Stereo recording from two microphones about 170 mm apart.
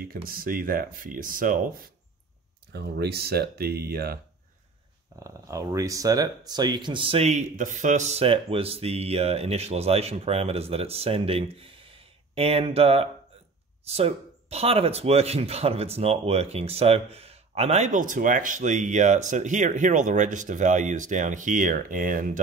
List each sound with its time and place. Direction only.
0.3 s speech: 60° right (ahead or behind)
2.7 s speech: 75° right (ahead or behind)
5.2 s speech: 20° right (ahead or behind); by 22.4 s 55° right (ahead or behind)